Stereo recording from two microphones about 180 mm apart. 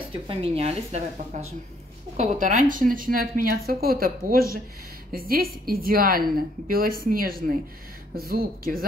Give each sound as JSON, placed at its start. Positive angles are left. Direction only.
{"t": 0.3, "sound": "a woman's voice", "side_deg": -35}